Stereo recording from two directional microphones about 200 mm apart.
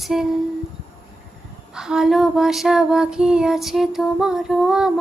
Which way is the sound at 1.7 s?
5° right (ahead or behind).